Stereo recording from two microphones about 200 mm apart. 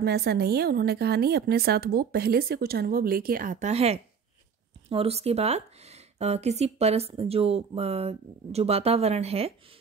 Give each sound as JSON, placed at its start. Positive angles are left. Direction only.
{"t": 0.0, "sound": "a woman's voice", "side_deg": -55}